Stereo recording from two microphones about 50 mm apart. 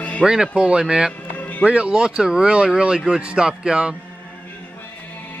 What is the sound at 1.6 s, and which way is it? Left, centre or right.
Speech, right.